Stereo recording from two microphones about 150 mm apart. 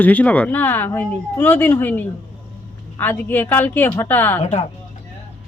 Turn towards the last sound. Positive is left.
turn(degrees=45)  # may be behind; listen again after turning